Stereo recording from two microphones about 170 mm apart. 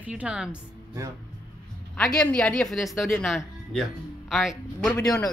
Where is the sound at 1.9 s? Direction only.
5° left (ahead or behind).